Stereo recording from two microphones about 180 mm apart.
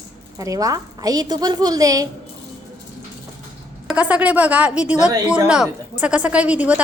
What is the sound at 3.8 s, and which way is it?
A woman's voice, 5° right (ahead or behind).